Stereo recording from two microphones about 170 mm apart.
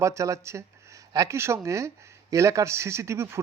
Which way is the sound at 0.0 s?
15° right (ahead or behind).